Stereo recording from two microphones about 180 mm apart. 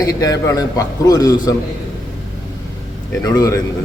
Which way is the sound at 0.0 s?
20° left (ahead or behind).